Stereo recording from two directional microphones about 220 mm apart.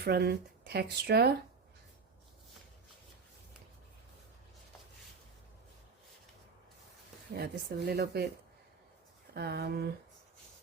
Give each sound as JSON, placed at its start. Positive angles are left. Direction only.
{"t": 0.0, "sound": "speech", "side_deg": -50}
{"t": 7.3, "sound": "speech", "side_deg": -45}
{"t": 9.3, "sound": "speech", "side_deg": -45}